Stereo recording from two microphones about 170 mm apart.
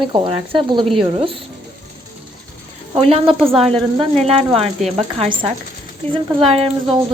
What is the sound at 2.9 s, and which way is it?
A woman's voice, 35° right (ahead or behind).